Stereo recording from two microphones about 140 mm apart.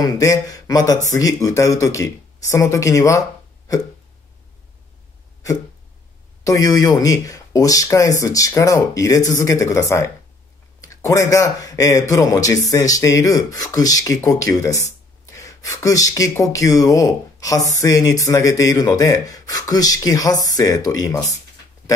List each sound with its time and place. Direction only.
0.0 s speech: 25° left (ahead or behind)
6.4 s speech: 25° left (ahead or behind)